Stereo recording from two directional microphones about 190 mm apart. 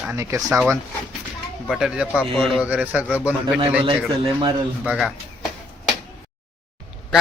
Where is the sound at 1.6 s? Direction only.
Centre (ahead or behind).